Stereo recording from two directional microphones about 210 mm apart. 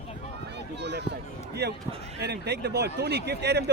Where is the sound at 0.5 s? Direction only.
55° right (ahead or behind).